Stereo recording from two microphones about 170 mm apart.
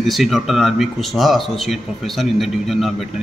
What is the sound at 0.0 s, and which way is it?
Speech, centre (ahead or behind).